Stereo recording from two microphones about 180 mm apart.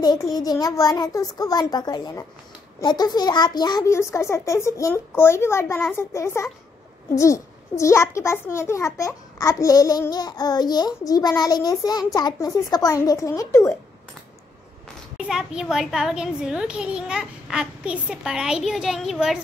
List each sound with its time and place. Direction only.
0.0 s a child's voice: 20° left (ahead or behind)
15.2 s a child's voice: 5° right (ahead or behind)